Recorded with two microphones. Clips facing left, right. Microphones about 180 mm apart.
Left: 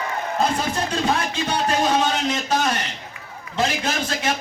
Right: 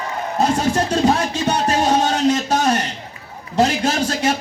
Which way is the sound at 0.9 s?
40° right (ahead or behind).